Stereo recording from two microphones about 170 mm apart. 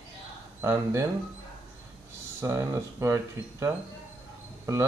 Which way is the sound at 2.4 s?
15° right (ahead or behind).